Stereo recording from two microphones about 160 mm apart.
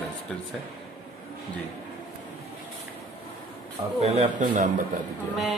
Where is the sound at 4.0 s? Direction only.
45° right (ahead or behind).